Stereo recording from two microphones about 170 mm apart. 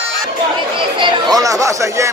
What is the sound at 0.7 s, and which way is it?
Speech, 30° right (ahead or behind).